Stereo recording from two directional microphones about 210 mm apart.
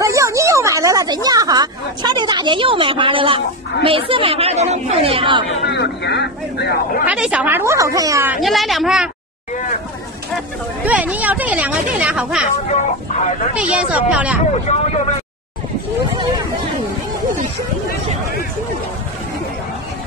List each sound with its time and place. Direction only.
0.0 s speech: 15° right (ahead or behind)
5.7 s speech: 55° left (ahead or behind)
7.1 s speech: 5° right (ahead or behind)
8.4 s speech: centre (ahead or behind)
10.9 s speech: 5° right (ahead or behind)
13.1 s speech: 35° left (ahead or behind)
13.6 s speech: 5° right (ahead or behind)
14.7 s speech: 35° left (ahead or behind)